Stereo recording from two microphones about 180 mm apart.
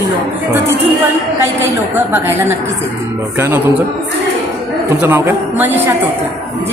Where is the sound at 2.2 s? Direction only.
10° right (ahead or behind).